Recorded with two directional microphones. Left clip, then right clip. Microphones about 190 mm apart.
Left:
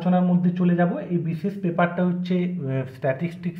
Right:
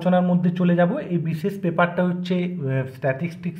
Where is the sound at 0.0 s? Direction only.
20° right (ahead or behind).